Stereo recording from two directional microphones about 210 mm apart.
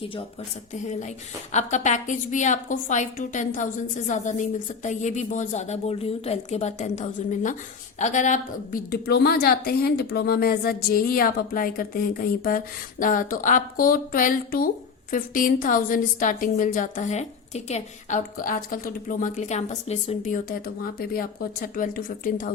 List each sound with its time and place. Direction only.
0.7 s a woman's voice: 35° left (ahead or behind)